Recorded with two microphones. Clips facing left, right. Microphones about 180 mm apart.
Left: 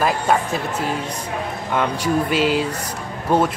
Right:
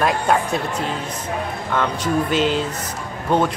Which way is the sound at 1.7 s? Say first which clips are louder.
Left 1 dB; 10° left (ahead or behind).